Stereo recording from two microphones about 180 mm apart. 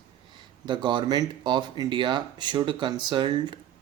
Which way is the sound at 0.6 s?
25° right (ahead or behind).